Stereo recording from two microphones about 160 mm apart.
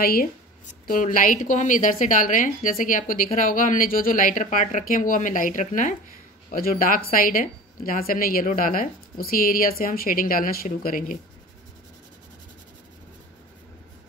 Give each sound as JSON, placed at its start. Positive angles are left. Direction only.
{"t": 0.0, "sound": "speech", "side_deg": 70}
{"t": 0.7, "sound": "a woman's voice", "side_deg": 55}
{"t": 6.5, "sound": "a woman's voice", "side_deg": 65}